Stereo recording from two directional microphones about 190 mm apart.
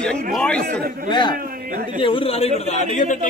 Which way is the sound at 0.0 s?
5° left (ahead or behind).